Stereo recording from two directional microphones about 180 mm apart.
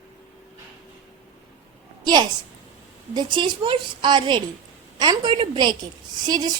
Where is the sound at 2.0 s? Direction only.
25° right (ahead or behind).